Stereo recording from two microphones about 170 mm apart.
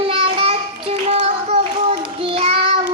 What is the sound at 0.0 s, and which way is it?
Child singing, 35° right (ahead or behind).